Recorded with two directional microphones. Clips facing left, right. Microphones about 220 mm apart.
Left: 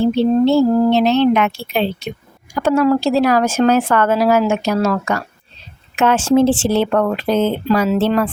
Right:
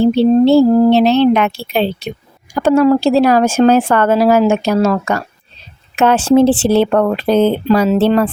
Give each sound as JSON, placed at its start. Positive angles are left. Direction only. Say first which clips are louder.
{"t": 0.0, "sound": "speech", "louder": "right 4 dB", "side_deg": -30}